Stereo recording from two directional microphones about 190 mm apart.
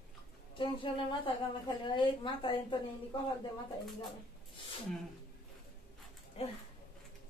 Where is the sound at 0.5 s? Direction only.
25° left (ahead or behind).